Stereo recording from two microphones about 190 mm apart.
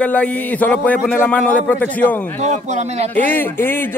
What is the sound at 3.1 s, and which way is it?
Speech, 10° left (ahead or behind).